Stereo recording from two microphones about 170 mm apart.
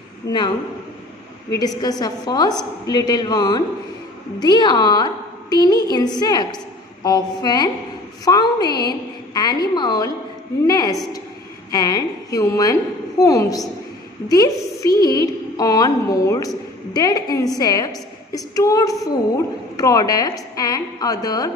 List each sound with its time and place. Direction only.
0.2 s a woman's voice: 20° left (ahead or behind)
1.5 s a woman's voice: 20° left (ahead or behind)